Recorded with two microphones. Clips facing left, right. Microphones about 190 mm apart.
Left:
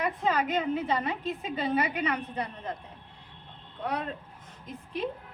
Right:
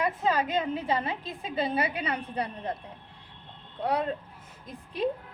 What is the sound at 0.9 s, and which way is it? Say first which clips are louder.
A woman's voice: even; 30° right (ahead or behind).